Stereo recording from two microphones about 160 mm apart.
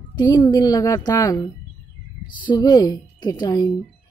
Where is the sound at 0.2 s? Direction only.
25° left (ahead or behind).